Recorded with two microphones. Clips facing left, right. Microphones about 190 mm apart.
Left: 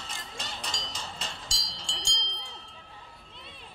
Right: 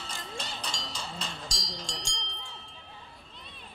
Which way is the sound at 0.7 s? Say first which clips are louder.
Even; 20° left (ahead or behind).